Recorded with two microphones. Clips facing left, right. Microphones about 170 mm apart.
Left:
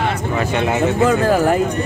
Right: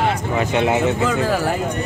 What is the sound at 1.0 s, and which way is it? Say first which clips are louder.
Speech: left 5 dB; 50° left (ahead or behind).